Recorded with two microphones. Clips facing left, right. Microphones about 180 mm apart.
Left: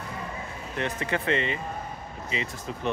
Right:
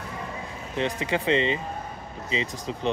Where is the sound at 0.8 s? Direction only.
15° right (ahead or behind).